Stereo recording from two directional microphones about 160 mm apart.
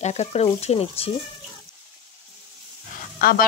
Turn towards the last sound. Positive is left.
turn(degrees=65)  # may be behind; listen again after turning